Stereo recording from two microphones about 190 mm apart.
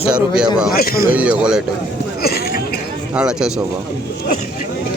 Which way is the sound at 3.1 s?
5° right (ahead or behind).